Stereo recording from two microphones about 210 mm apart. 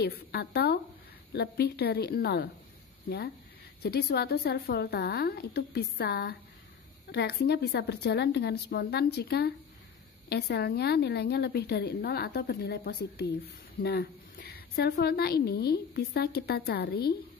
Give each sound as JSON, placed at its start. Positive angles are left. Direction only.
{"t": 0.0, "sound": "a woman's voice", "side_deg": 50}
{"t": 3.8, "sound": "a woman's voice", "side_deg": 50}